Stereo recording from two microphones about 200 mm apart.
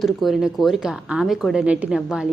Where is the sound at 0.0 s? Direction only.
Centre (ahead or behind).